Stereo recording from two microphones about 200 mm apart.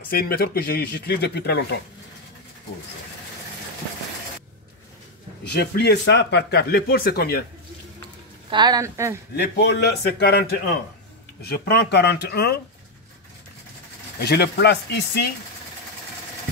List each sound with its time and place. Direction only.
0.1 s speech: 50° left (ahead or behind)
5.5 s speech: 55° left (ahead or behind)
8.5 s speech: 20° right (ahead or behind)
9.4 s a man's voice: 55° left (ahead or behind)
14.2 s speech: 55° left (ahead or behind)